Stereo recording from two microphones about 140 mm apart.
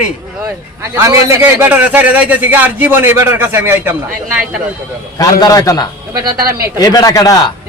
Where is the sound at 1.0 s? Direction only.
20° right (ahead or behind).